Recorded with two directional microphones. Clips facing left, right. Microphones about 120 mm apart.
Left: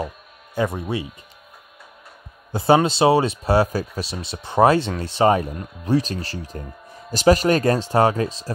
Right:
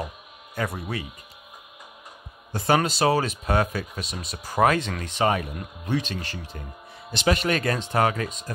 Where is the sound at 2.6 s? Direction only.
25° left (ahead or behind).